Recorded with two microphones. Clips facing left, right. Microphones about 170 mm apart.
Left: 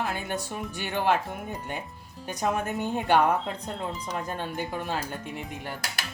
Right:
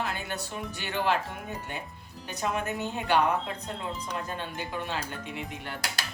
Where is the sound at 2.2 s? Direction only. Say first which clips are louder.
Left 3 dB; 45° left (ahead or behind).